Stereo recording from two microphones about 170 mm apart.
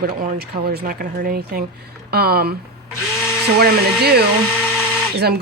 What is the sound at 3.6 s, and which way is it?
Speech, 70° right (ahead or behind).